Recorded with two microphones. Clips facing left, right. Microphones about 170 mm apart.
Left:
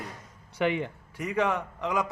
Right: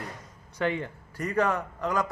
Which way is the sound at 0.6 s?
15° left (ahead or behind).